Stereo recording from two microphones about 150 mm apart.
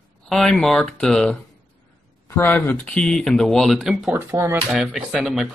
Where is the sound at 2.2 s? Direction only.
15° left (ahead or behind).